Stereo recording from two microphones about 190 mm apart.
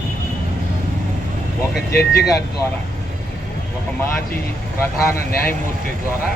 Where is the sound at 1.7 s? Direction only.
60° left (ahead or behind).